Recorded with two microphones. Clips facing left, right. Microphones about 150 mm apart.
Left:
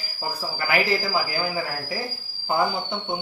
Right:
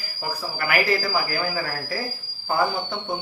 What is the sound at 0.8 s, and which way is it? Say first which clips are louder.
A man's voice: right 1 dB; 20° left (ahead or behind).